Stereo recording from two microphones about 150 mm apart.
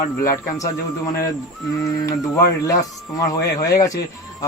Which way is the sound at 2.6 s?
20° left (ahead or behind).